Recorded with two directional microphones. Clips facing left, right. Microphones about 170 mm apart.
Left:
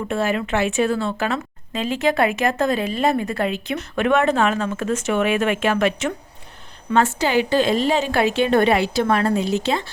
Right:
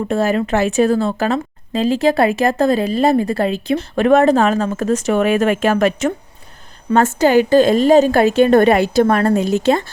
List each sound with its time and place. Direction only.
0.1 s a woman's voice: 40° right (ahead or behind)